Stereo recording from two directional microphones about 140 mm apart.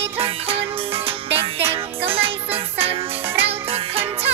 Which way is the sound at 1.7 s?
45° right (ahead or behind).